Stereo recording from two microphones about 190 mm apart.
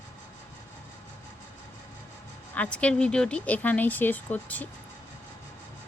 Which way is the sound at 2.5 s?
5° left (ahead or behind).